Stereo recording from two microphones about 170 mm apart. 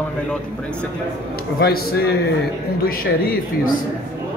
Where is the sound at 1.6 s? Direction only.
65° left (ahead or behind).